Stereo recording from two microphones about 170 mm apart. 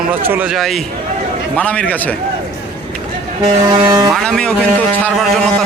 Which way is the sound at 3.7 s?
25° right (ahead or behind).